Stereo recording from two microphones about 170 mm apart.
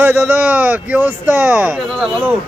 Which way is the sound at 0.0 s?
10° right (ahead or behind).